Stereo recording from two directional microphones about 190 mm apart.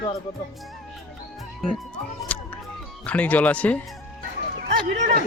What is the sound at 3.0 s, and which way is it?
Speech, 5° left (ahead or behind).